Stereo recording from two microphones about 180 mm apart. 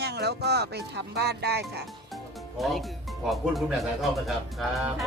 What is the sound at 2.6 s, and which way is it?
Speech, centre (ahead or behind).